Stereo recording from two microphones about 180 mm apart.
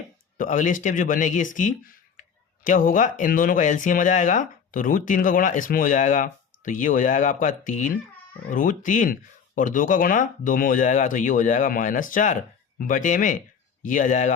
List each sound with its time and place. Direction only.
0.3 s speech: 45° left (ahead or behind)